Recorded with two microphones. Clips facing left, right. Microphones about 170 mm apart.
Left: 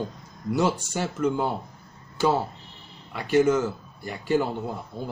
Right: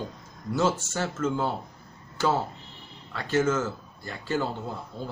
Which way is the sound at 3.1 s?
15° left (ahead or behind).